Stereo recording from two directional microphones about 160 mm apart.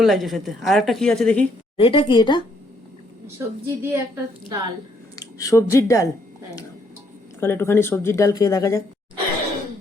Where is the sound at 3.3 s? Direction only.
15° right (ahead or behind).